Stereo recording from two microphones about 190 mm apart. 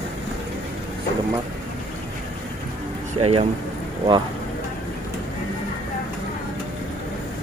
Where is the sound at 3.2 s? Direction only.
30° right (ahead or behind).